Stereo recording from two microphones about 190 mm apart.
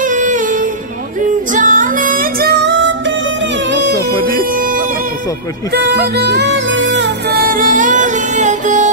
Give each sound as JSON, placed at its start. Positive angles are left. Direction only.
{"t": 0.0, "sound": "music", "side_deg": -40}
{"t": 4.1, "sound": "music", "side_deg": -45}
{"t": 5.7, "sound": "music", "side_deg": -60}